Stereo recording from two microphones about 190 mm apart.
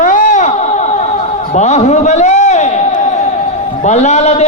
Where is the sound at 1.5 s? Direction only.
35° left (ahead or behind).